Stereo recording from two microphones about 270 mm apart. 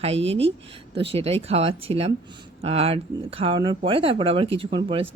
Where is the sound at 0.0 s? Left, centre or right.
Right.